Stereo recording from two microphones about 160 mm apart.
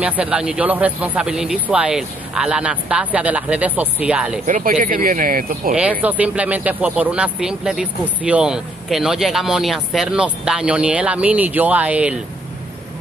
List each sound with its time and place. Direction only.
0.0 s speech: 10° right (ahead or behind)
4.5 s speech: 55° right (ahead or behind)
5.8 s speech: 10° right (ahead or behind)